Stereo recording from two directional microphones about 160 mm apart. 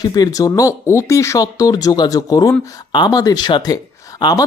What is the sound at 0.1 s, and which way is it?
Speech, 20° left (ahead or behind).